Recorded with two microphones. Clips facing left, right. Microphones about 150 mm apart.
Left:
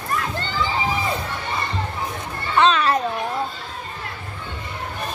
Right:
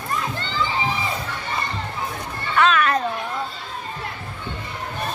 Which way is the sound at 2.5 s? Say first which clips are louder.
Left 1 dB; 30° left (ahead or behind).